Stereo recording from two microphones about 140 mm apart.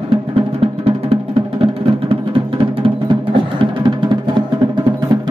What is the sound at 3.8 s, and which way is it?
Music, 35° right (ahead or behind).